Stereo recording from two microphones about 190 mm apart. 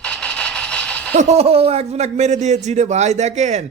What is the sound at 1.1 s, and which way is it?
A man's voice, 35° right (ahead or behind).